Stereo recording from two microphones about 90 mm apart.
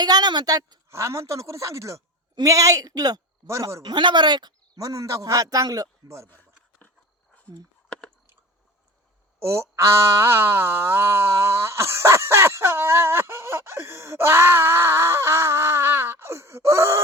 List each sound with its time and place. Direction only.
0.0 s speech: 50° right (ahead or behind)
0.9 s a woman's voice: 30° right (ahead or behind)
3.4 s a woman's voice: 30° right (ahead or behind)
3.8 s speech: 55° right (ahead or behind); by 6.2 s 40° right (ahead or behind)
6.2 s a sound: 20° left (ahead or behind)
9.4 s a sound: 30° right (ahead or behind)